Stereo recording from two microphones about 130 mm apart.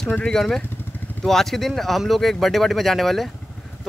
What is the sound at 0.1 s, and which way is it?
Speech, 5° left (ahead or behind).